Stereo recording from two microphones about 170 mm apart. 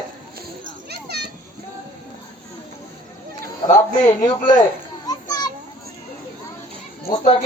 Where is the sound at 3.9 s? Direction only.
50° left (ahead or behind).